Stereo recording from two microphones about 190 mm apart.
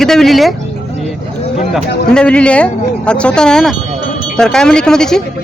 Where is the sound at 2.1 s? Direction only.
5° left (ahead or behind).